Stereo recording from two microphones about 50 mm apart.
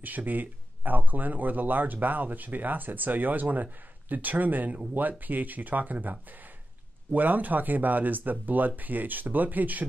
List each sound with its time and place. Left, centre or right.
0.0 s speech: right